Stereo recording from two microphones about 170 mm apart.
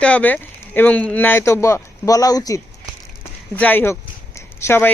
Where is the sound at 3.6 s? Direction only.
10° left (ahead or behind).